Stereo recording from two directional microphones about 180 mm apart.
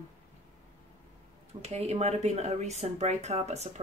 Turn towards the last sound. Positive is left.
turn(degrees=-35)  # may be behind; listen again after turning